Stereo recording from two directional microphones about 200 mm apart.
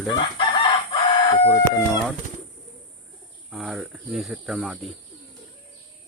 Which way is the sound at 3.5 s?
Centre (ahead or behind).